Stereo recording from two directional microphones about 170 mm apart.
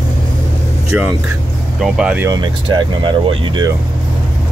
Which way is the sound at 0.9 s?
5° right (ahead or behind).